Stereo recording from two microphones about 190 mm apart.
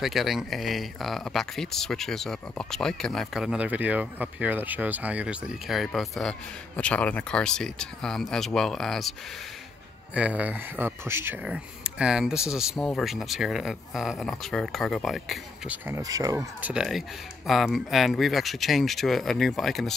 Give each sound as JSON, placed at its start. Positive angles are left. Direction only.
{"t": 0.0, "sound": "speech", "side_deg": 0}
{"t": 10.1, "sound": "speech", "side_deg": -5}
{"t": 16.0, "sound": "speech", "side_deg": -20}
{"t": 16.7, "sound": "speech", "side_deg": 0}